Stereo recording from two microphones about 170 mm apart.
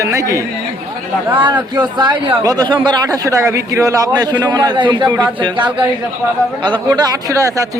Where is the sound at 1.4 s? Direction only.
25° right (ahead or behind).